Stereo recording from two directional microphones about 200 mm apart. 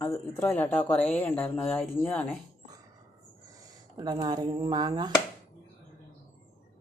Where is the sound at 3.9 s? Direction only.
20° right (ahead or behind).